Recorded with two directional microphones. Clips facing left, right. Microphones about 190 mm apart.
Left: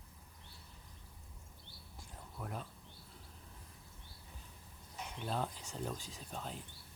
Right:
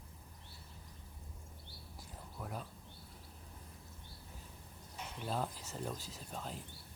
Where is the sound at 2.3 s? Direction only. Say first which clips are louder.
Even; centre (ahead or behind).